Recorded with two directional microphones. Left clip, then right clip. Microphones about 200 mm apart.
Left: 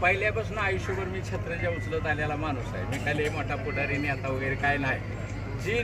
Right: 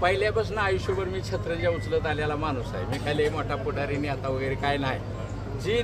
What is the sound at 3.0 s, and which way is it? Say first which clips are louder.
A woman's voice: right 3 dB; 5° right (ahead or behind).